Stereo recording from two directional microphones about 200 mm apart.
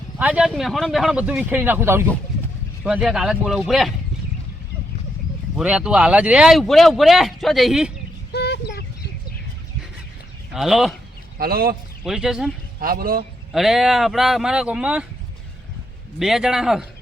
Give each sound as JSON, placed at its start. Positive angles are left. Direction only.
{"t": 0.2, "sound": "speech", "side_deg": -5}
{"t": 5.5, "sound": "speech", "side_deg": -5}
{"t": 8.3, "sound": "a sound", "side_deg": 55}
{"t": 10.5, "sound": "speech", "side_deg": 0}
{"t": 11.3, "sound": "speech", "side_deg": -50}
{"t": 12.0, "sound": "speech", "side_deg": 0}
{"t": 12.8, "sound": "speech", "side_deg": -45}
{"t": 13.5, "sound": "speech", "side_deg": 0}
{"t": 16.1, "sound": "speech", "side_deg": 0}